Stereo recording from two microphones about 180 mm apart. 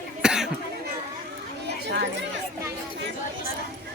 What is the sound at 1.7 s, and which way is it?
Chatter, 70° right (ahead or behind).